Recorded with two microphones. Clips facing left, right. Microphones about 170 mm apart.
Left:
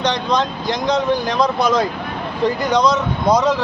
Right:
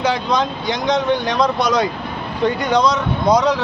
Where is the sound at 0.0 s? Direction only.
5° right (ahead or behind).